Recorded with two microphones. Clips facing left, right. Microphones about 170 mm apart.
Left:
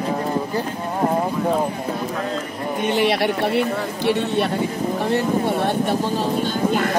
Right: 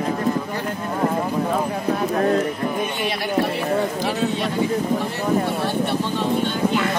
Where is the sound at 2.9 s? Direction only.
75° left (ahead or behind).